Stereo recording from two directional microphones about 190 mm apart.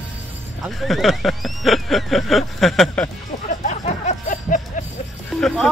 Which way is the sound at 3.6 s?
40° left (ahead or behind).